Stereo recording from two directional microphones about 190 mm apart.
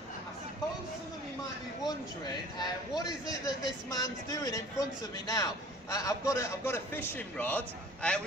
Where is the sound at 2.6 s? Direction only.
20° left (ahead or behind).